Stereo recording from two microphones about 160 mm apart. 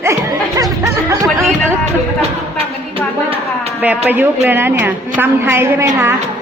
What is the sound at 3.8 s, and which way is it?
A woman's voice, 10° right (ahead or behind).